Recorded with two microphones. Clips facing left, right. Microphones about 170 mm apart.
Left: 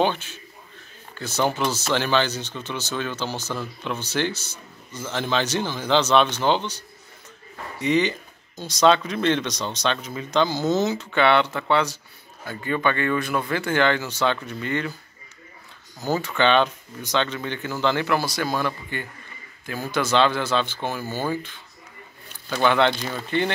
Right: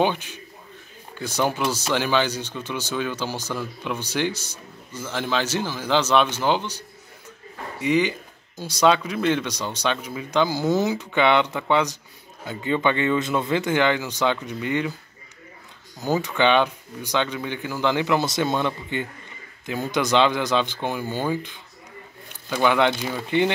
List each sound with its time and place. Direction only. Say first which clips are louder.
0.0 s speech: even; 15° right (ahead or behind)
7.8 s speech: even; 10° right (ahead or behind)
16.0 s speech: right 1 dB; 15° right (ahead or behind)